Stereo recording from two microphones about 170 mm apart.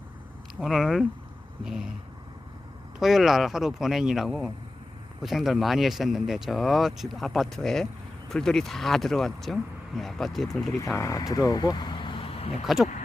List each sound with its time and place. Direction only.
0.6 s speech: centre (ahead or behind)
3.0 s speech: centre (ahead or behind)
10.9 s speech: 20° left (ahead or behind); by 12.6 s 35° left (ahead or behind)
12.6 s speech: centre (ahead or behind)